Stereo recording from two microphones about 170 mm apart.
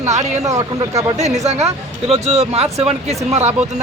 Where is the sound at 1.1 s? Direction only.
40° right (ahead or behind).